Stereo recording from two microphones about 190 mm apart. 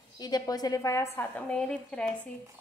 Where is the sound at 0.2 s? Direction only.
20° left (ahead or behind).